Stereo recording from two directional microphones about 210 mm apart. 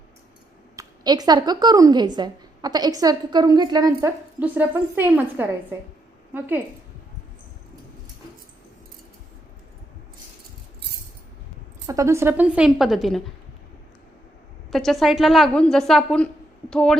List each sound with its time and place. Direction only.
0.8 s a woman's voice: 20° right (ahead or behind)
11.9 s a woman's voice: 15° right (ahead or behind)
14.7 s a woman's voice: centre (ahead or behind)